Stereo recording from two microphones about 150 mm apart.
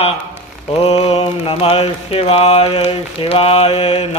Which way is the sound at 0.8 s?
45° left (ahead or behind).